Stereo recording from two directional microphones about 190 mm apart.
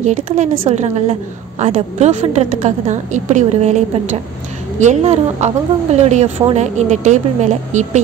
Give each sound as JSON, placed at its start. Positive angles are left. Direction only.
{"t": 0.0, "sound": "a woman's voice", "side_deg": -35}